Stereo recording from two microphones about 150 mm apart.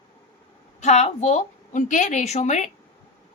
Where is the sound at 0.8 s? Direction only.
50° left (ahead or behind).